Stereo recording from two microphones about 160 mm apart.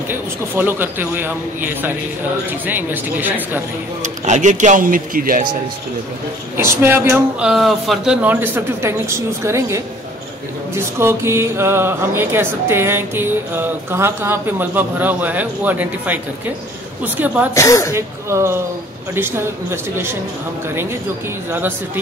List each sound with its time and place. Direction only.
0.1 s speech: 15° right (ahead or behind)
4.0 s speech: 50° right (ahead or behind)
6.5 s speech: 15° right (ahead or behind)
17.6 s speech: 20° left (ahead or behind)
17.9 s speech: 15° right (ahead or behind)
21.5 s speech: 10° right (ahead or behind)